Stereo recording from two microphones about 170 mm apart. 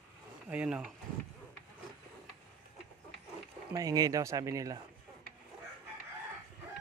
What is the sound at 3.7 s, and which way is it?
Speech, 20° right (ahead or behind).